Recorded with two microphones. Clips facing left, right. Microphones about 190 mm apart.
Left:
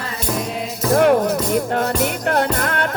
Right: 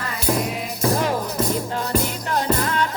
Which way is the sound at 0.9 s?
60° left (ahead or behind).